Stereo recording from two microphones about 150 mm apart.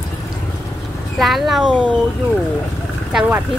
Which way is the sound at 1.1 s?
Centre (ahead or behind).